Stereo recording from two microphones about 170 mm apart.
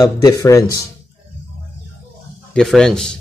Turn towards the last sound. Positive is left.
turn(degrees=5)  # may be behind; listen again after turning